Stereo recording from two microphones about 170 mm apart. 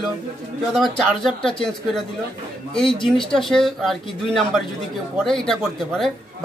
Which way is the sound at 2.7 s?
30° left (ahead or behind).